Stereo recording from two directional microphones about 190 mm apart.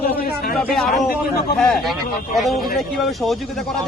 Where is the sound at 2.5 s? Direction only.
50° left (ahead or behind).